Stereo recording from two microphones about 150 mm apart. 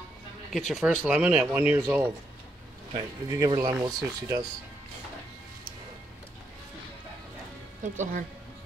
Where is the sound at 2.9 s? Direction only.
30° right (ahead or behind).